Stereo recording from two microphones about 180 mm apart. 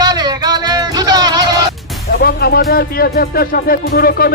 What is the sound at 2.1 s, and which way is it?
Speech, 55° left (ahead or behind).